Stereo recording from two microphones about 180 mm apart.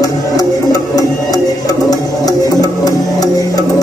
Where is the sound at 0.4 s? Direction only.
20° left (ahead or behind).